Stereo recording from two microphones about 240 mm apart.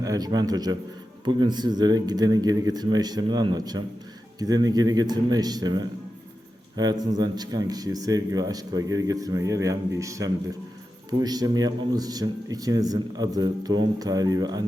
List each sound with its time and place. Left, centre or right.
0.0 s speech: centre